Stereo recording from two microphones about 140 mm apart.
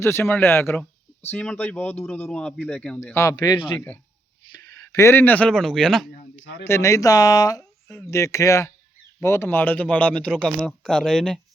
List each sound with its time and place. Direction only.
0.0 s speech: 15° left (ahead or behind)
3.1 s speech: 20° left (ahead or behind)
3.8 s speech: 10° left (ahead or behind)
4.5 s speech: 25° left (ahead or behind); by 6.1 s 5° left (ahead or behind)
6.7 s speech: 20° left (ahead or behind); by 11.3 s 5° left (ahead or behind)